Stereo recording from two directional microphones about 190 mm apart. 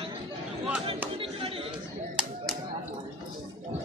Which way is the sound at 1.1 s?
30° right (ahead or behind).